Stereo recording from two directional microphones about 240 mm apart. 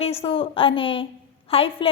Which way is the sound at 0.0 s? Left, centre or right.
Left.